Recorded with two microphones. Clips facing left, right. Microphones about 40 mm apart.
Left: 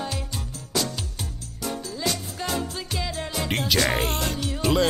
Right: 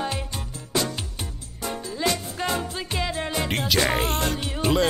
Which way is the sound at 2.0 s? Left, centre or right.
Right.